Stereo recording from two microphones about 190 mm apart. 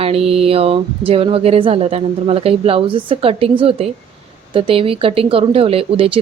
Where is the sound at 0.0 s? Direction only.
30° right (ahead or behind).